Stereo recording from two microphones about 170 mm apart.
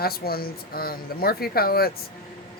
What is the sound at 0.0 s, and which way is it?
A man's voice, 65° left (ahead or behind).